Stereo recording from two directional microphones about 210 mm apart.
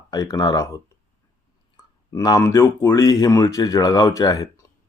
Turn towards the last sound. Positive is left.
turn(degrees=20)  # may be behind; listen again after turning